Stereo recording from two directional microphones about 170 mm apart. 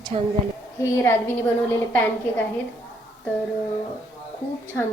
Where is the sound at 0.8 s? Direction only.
15° left (ahead or behind).